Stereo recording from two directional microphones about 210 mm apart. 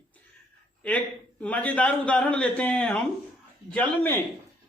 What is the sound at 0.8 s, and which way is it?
Speech, 5° left (ahead or behind).